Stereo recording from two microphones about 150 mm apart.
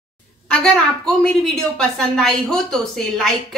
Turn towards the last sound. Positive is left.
turn(degrees=5)  # may be behind; listen again after turning